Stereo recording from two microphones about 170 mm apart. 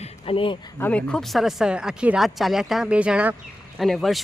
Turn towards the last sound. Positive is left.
turn(degrees=0)  # may be behind; listen again after turning